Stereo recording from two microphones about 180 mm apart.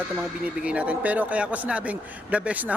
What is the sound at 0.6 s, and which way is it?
A man's voice, 5° right (ahead or behind).